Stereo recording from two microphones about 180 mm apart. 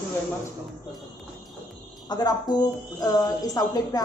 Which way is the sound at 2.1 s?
20° left (ahead or behind).